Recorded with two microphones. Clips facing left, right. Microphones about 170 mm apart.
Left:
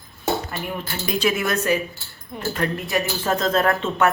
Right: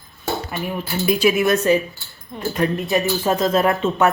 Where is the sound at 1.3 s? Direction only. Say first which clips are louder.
Right 4 dB; 20° right (ahead or behind).